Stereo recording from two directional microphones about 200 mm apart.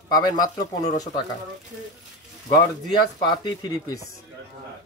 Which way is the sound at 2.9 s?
20° left (ahead or behind).